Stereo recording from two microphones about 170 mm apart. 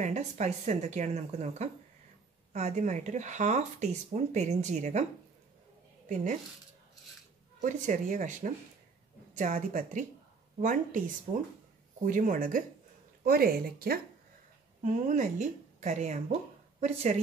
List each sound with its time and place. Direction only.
0.0 s speech: 40° right (ahead or behind)
7.6 s speech: 45° right (ahead or behind)
13.2 s a woman's voice: 60° right (ahead or behind)
14.8 s a woman's voice: 45° right (ahead or behind)